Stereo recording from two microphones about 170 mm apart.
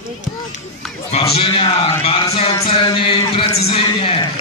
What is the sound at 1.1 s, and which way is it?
Music, 35° left (ahead or behind).